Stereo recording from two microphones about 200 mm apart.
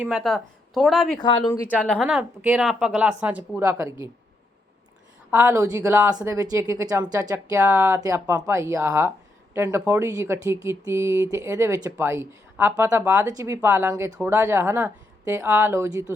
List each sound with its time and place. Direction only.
0.0 s speech: centre (ahead or behind)
1.2 s speech: 20° left (ahead or behind)
1.8 s speech: 5° left (ahead or behind)
2.0 s speech: 5° right (ahead or behind)
5.3 s speech: 10° right (ahead or behind)